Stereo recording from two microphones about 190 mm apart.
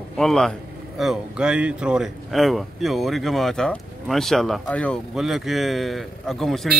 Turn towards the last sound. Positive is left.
turn(degrees=0)  # may be behind; listen again after turning